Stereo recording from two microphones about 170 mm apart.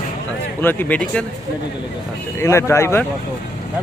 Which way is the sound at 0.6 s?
10° left (ahead or behind).